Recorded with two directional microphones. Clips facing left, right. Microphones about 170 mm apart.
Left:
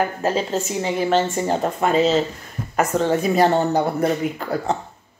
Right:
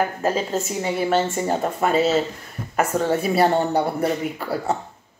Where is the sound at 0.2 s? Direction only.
35° left (ahead or behind).